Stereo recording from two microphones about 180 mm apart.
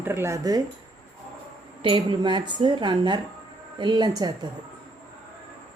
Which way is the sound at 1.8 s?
30° right (ahead or behind).